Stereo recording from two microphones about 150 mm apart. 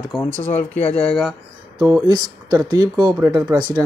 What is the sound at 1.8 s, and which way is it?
Speech, 30° right (ahead or behind).